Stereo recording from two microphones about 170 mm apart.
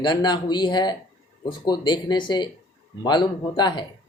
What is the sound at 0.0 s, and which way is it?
Speech, 25° left (ahead or behind).